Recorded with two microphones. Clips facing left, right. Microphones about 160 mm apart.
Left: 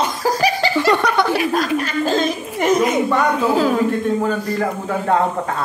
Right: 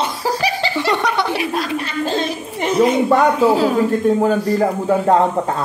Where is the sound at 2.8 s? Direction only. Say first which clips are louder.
Right 3 dB; 30° right (ahead or behind).